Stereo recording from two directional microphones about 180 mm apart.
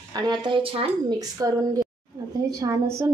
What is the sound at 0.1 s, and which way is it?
Speech, 25° right (ahead or behind).